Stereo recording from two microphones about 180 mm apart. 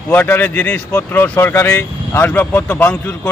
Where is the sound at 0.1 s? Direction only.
10° left (ahead or behind).